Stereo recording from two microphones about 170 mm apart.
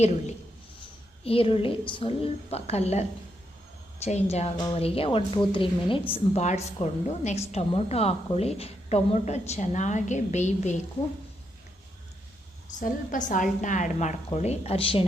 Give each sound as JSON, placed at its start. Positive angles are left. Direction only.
{"t": 1.2, "sound": "a woman's voice", "side_deg": 35}
{"t": 12.8, "sound": "a woman's voice", "side_deg": 50}